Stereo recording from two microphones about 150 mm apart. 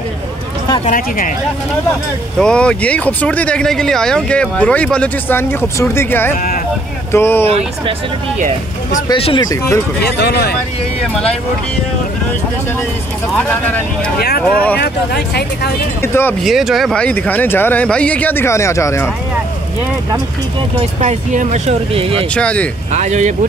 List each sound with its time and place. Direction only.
0.8 s speech: 65° left (ahead or behind)
2.3 s speech: 5° left (ahead or behind)
9.1 s speech: 35° left (ahead or behind)
10.0 s speech: 90° left
13.5 s speech: 10° left (ahead or behind)
14.8 s speech: 90° left
16.0 s speech: 15° left (ahead or behind)
16.4 s speech: centre (ahead or behind); by 19.0 s 20° left (ahead or behind)
20.8 s speech: 50° right (ahead or behind)
22.3 s speech: 10° left (ahead or behind)
22.9 s speech: 50° right (ahead or behind)